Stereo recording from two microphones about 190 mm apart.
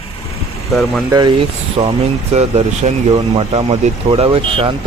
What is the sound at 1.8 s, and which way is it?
Speech, 25° right (ahead or behind).